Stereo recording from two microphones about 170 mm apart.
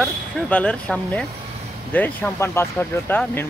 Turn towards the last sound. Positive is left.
turn(degrees=10)  # may be behind; listen again after turning